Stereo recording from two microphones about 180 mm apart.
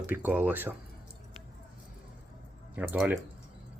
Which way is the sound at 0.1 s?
10° right (ahead or behind).